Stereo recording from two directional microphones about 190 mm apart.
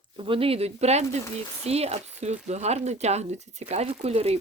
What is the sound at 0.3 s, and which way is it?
Speech, 30° right (ahead or behind).